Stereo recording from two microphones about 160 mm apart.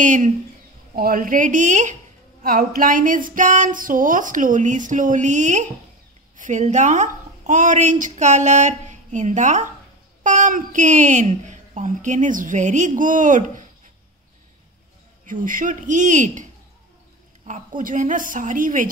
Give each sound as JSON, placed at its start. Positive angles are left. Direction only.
{"t": 0.0, "sound": "a woman's voice", "side_deg": -50}
{"t": 0.9, "sound": "a woman's voice", "side_deg": -65}
{"t": 2.4, "sound": "a sound", "side_deg": -65}
{"t": 6.3, "sound": "a woman's voice", "side_deg": -50}
{"t": 15.2, "sound": "a woman's voice", "side_deg": -55}
{"t": 17.5, "sound": "a sound", "side_deg": -55}